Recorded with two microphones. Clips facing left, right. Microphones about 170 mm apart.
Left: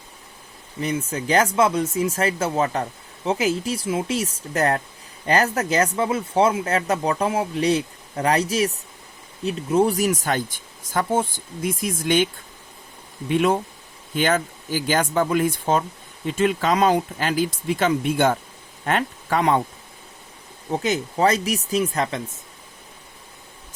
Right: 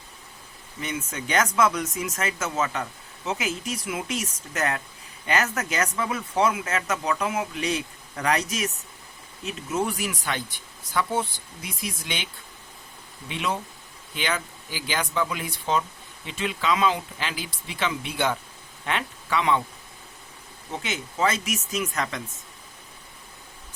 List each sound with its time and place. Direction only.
0.8 s speech: 35° left (ahead or behind)
20.7 s speech: 40° left (ahead or behind)